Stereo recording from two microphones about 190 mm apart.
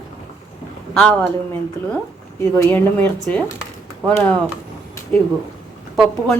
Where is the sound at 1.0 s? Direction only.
5° left (ahead or behind).